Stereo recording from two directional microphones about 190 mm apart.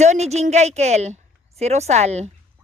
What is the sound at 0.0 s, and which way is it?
A woman's voice, 35° right (ahead or behind).